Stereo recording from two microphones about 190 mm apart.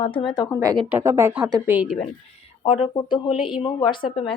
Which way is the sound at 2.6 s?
30° left (ahead or behind).